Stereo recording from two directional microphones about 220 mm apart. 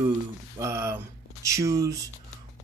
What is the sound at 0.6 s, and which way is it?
Speech, 10° right (ahead or behind).